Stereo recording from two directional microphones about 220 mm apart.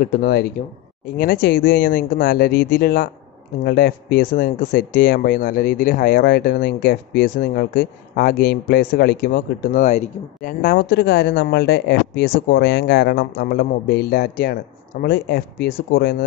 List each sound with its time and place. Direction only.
0.0 s speech: 45° left (ahead or behind)